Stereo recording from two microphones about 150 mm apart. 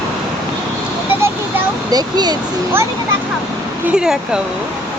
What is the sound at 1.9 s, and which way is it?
Speech, 25° right (ahead or behind).